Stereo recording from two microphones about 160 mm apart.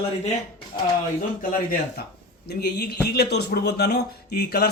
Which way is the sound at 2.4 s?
85° left.